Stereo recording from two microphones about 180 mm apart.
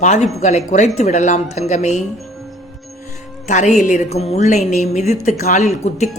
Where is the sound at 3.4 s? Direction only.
40° left (ahead or behind).